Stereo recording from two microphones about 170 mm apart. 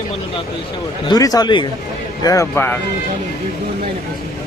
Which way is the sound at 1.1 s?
20° left (ahead or behind).